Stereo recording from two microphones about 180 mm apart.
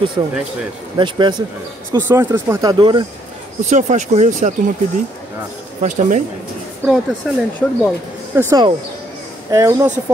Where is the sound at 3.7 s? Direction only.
40° right (ahead or behind).